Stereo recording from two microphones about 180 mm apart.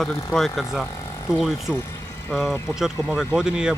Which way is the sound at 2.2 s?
10° left (ahead or behind).